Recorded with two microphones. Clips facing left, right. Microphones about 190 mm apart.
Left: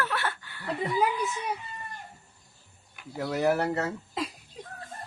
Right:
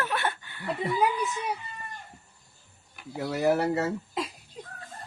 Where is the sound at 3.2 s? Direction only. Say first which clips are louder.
Right 1 dB; 10° right (ahead or behind).